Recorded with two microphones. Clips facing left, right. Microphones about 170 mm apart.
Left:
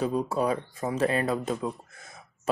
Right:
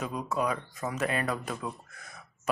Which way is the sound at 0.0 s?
30° left (ahead or behind).